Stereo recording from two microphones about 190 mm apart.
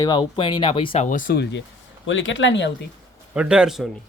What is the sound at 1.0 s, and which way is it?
Speech, 45° left (ahead or behind).